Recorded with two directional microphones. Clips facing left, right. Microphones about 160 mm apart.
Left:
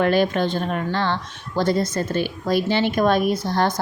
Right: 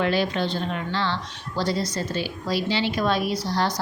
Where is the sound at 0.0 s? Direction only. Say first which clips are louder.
Left 5 dB; 50° left (ahead or behind).